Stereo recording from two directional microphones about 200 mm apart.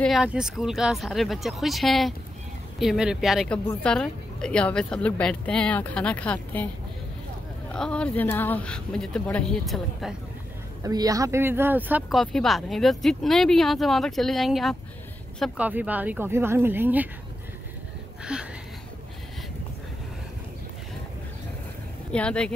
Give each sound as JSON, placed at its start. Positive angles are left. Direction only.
{"t": 0.0, "sound": "speech", "side_deg": 0}
{"t": 7.7, "sound": "speech", "side_deg": 5}
{"t": 10.8, "sound": "speech", "side_deg": -20}
{"t": 18.2, "sound": "speech", "side_deg": -5}
{"t": 22.1, "sound": "speech", "side_deg": 5}